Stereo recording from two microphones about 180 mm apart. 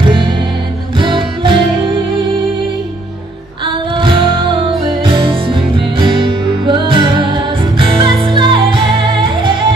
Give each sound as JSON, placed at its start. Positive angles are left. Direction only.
{"t": 0.9, "sound": "music", "side_deg": -30}
{"t": 4.0, "sound": "music", "side_deg": -30}